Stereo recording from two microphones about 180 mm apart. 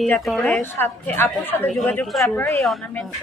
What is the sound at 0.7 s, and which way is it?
A woman's voice, 15° left (ahead or behind).